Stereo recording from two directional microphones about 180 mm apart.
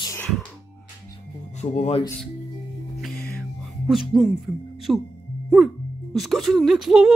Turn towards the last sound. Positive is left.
turn(degrees=0)  # may be behind; listen again after turning